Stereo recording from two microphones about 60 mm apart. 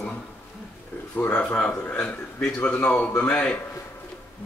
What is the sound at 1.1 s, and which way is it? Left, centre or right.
Speech, left.